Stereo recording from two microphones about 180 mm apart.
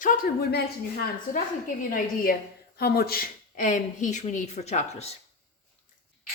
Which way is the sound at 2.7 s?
60° left (ahead or behind).